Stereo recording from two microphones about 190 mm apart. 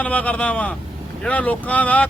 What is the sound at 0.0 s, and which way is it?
Speech, 5° left (ahead or behind).